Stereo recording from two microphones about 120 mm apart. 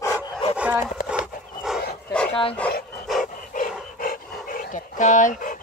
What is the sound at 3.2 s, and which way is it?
Dog, 90° left.